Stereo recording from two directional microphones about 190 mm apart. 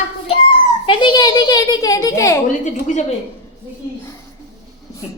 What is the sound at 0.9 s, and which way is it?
A child's voice, 25° left (ahead or behind).